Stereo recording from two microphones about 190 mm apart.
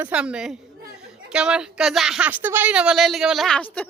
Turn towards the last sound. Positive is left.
turn(degrees=5)  # may be behind; listen again after turning